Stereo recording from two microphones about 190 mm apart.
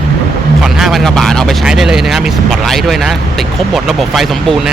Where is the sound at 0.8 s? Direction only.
Centre (ahead or behind).